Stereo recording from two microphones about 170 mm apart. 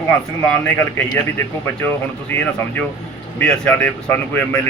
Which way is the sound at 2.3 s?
10° left (ahead or behind).